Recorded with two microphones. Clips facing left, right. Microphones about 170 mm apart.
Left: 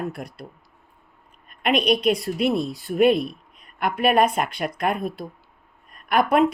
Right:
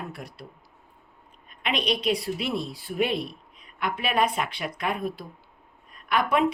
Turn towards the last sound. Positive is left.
turn(degrees=50)  # may be behind; listen again after turning